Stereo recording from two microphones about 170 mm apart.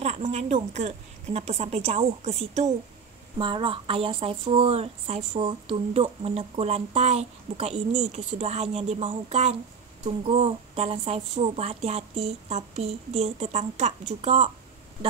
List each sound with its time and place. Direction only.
0.0 s speech: 40° right (ahead or behind)
3.3 s speech: 30° right (ahead or behind)